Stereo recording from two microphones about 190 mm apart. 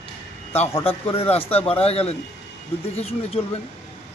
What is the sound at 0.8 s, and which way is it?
A man's voice, 30° left (ahead or behind).